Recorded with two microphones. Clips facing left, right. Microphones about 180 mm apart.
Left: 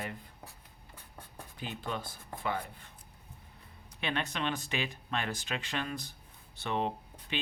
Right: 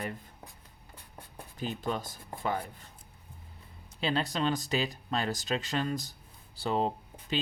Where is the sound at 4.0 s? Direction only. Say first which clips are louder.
Right 5 dB; 30° right (ahead or behind).